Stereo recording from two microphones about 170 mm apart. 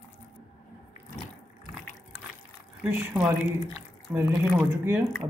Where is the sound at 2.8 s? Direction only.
5° right (ahead or behind).